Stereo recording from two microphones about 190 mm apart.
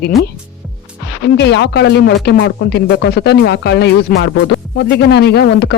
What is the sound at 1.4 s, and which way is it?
Speech, 65° left (ahead or behind).